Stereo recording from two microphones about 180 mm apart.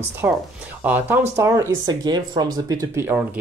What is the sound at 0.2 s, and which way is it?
Speech, 10° right (ahead or behind).